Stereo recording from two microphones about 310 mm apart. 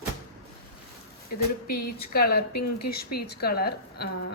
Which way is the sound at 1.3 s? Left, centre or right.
Left.